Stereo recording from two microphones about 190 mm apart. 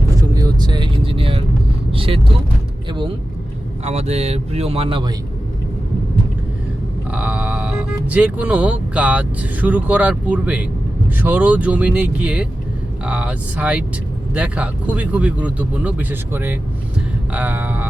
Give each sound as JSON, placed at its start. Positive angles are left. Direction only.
{"t": 0.2, "sound": "vehicle", "side_deg": -20}
{"t": 1.9, "sound": "speech", "side_deg": -30}
{"t": 3.8, "sound": "speech", "side_deg": -35}
{"t": 7.1, "sound": "speech", "side_deg": -5}